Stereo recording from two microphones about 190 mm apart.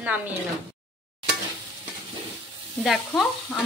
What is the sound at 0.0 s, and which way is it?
Speech, 10° right (ahead or behind).